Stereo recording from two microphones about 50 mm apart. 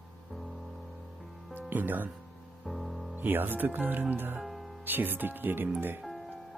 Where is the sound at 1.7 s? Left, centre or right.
Right.